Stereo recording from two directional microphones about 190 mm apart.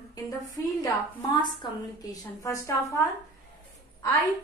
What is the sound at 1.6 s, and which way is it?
Female singing, 20° left (ahead or behind).